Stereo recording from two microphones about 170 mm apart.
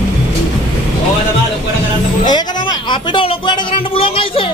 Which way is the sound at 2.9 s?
30° left (ahead or behind).